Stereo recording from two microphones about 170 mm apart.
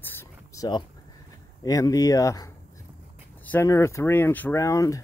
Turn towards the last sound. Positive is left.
turn(degrees=20)  # may be behind; listen again after turning